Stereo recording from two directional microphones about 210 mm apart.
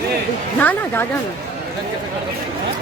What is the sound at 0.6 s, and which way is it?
Speech, 10° left (ahead or behind).